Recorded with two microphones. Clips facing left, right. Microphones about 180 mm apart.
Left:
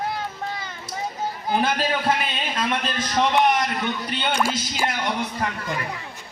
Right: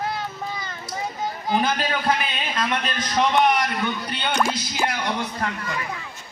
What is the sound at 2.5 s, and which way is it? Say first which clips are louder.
A man's voice: even; 5° left (ahead or behind).